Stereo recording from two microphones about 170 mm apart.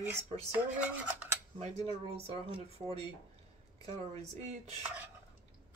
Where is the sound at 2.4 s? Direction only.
35° right (ahead or behind).